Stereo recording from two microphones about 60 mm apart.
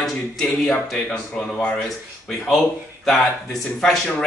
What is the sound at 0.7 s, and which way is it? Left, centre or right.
Speech, centre.